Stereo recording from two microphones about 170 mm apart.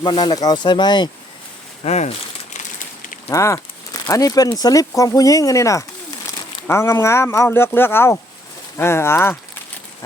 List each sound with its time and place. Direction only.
0.0 s speech: 25° left (ahead or behind)
1.8 s crumpling: 40° left (ahead or behind)
3.2 s speech: 15° left (ahead or behind)